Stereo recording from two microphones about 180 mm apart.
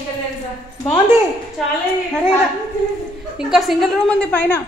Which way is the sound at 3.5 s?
Centre (ahead or behind).